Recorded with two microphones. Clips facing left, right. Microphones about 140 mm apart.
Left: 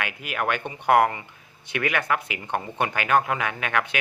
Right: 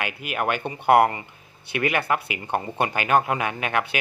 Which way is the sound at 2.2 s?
10° right (ahead or behind).